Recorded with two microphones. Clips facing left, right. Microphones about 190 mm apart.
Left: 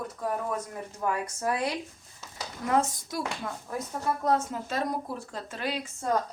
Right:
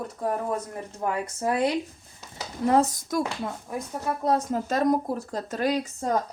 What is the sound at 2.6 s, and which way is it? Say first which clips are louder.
Speech: right 5 dB; 35° right (ahead or behind).